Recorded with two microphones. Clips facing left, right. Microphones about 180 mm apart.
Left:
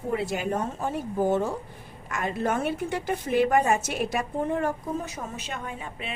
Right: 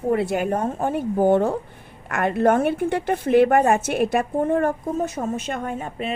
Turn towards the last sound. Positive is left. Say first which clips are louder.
# right 8 dB
turn(degrees=-45)  # may be behind; listen again after turning